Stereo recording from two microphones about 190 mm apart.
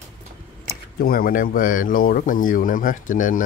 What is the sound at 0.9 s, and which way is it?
Speech, 50° left (ahead or behind).